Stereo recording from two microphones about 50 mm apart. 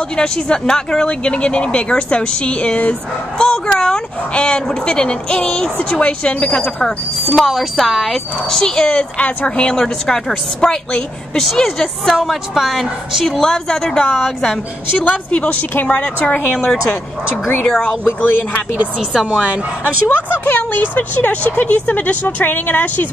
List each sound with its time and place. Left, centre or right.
0.1 s speech: centre
7.3 s speech: centre; by 9.8 s left
9.8 s speech: centre
12.2 s a woman's voice: centre
13.4 s a woman's voice: centre
15.0 s speech: left
18.0 s speech: left
18.9 s a woman's voice: centre
19.8 s speech: left